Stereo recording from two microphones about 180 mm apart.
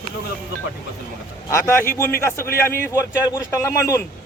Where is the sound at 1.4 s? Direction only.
15° left (ahead or behind).